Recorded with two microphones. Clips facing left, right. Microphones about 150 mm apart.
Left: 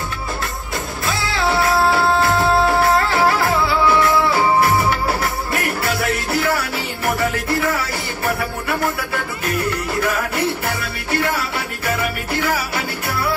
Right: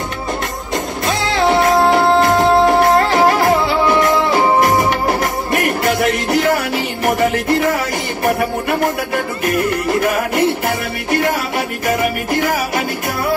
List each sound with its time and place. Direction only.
1.0 s music: 20° right (ahead or behind)
6.3 s music: 15° right (ahead or behind)
10.0 s music: 15° right (ahead or behind)
12.4 s music: 45° right (ahead or behind)